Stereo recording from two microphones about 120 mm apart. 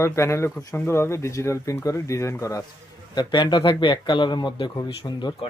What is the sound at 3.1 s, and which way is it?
Speech, 40° left (ahead or behind).